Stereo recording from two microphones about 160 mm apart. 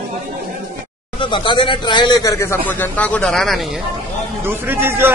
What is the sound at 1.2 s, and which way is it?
Speech, 30° left (ahead or behind).